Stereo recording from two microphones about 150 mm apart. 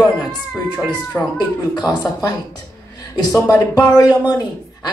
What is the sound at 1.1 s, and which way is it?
Speech, 15° left (ahead or behind).